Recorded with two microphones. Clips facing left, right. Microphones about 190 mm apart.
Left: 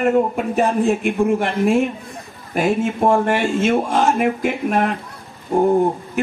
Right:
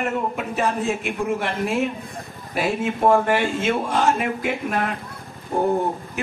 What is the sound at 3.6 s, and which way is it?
Speech, 45° left (ahead or behind).